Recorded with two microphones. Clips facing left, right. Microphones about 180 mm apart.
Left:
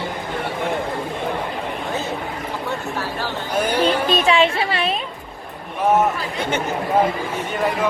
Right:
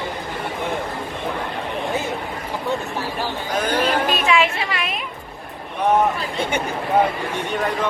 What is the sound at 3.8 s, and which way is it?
Speech, 35° left (ahead or behind).